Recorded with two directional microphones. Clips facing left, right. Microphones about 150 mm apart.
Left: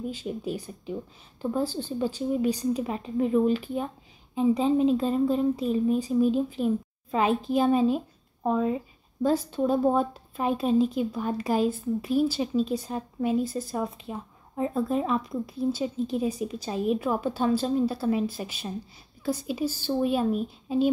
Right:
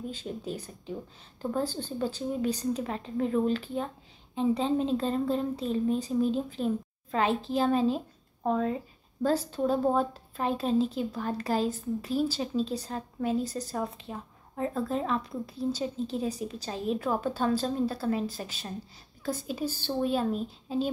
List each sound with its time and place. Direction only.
0.1 s speech: 10° left (ahead or behind)
13.4 s speech: 40° right (ahead or behind)
13.7 s speech: 15° left (ahead or behind)